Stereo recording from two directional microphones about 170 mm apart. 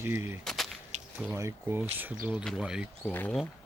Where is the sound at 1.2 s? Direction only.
15° right (ahead or behind).